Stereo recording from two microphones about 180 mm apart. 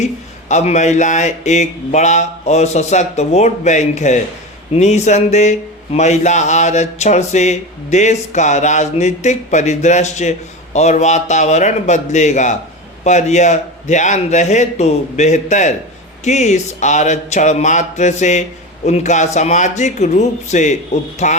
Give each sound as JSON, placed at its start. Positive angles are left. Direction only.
{"t": 0.0, "sound": "speech", "side_deg": 40}